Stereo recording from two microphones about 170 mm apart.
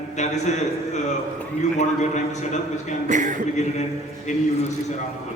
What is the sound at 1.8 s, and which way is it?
A man's voice, 45° left (ahead or behind).